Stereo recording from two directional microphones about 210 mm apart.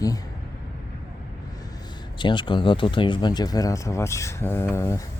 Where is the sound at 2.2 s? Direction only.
20° left (ahead or behind).